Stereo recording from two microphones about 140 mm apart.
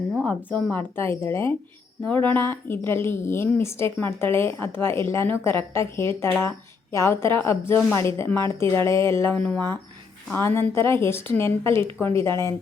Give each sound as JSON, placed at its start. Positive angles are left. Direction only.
{"t": 0.3, "sound": "speech", "side_deg": 10}